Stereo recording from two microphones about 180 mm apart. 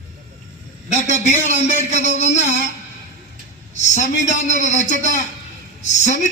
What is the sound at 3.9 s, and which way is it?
A woman's voice, 45° left (ahead or behind).